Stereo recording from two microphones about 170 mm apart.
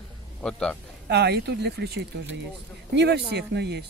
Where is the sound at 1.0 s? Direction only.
75° right (ahead or behind).